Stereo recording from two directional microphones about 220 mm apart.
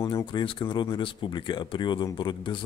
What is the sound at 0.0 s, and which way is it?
Speech, 20° left (ahead or behind).